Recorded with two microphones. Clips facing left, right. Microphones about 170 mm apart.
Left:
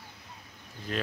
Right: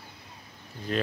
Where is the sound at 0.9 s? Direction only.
Centre (ahead or behind).